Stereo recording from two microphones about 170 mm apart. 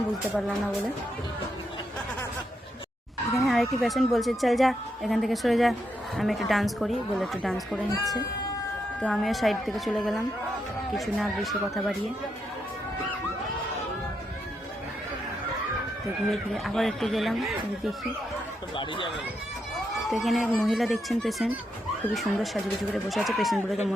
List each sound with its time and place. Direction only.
3.3 s a woman's voice: centre (ahead or behind)
16.3 s a woman's voice: centre (ahead or behind)
18.8 s speech: 30° left (ahead or behind)
20.1 s a woman's voice: centre (ahead or behind)